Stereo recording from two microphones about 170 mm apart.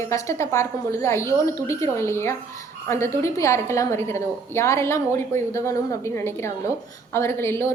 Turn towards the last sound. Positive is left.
turn(degrees=15)  # may be behind; listen again after turning